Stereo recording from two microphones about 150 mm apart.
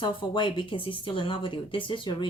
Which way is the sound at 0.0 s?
30° left (ahead or behind).